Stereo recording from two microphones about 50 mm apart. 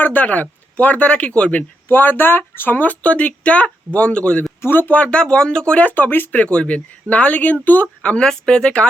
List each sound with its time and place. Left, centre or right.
0.0 s speech: left
1.9 s speech: left
4.6 s speech: left
4.9 s speech: left
5.8 s speech: left
6.3 s speech: left
8.0 s speech: centre